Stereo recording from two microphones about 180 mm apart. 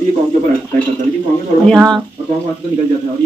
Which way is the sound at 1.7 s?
5° left (ahead or behind).